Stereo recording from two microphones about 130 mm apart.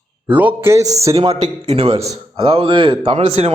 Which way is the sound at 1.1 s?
45° right (ahead or behind).